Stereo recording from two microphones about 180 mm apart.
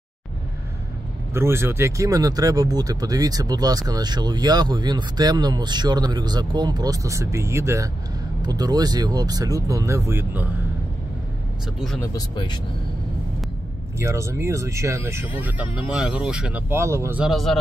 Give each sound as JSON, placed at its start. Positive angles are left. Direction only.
{"t": 1.3, "sound": "speech", "side_deg": -15}
{"t": 12.0, "sound": "speech", "side_deg": 20}
{"t": 13.9, "sound": "speech", "side_deg": -15}
{"t": 17.2, "sound": "speech", "side_deg": 0}